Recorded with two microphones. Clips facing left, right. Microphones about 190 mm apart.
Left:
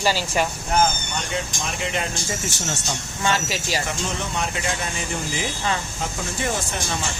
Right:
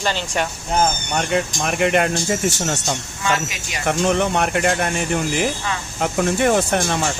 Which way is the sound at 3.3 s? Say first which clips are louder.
Left 1 dB; 30° left (ahead or behind).